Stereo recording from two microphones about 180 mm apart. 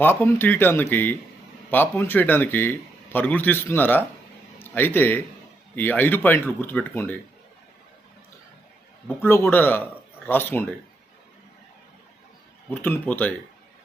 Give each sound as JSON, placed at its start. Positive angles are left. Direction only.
{"t": 0.0, "sound": "a man's voice", "side_deg": 10}
{"t": 9.0, "sound": "a man's voice", "side_deg": 15}
{"t": 12.7, "sound": "a man's voice", "side_deg": 10}